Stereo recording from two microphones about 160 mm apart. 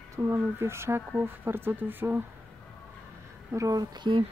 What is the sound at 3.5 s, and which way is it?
Speech, 20° right (ahead or behind).